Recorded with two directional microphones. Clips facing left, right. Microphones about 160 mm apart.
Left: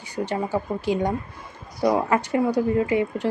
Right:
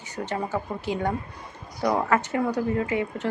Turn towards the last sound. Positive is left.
turn(degrees=20)  # may be behind; listen again after turning